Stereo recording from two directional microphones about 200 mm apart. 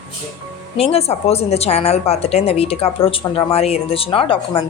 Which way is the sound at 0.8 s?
30° left (ahead or behind).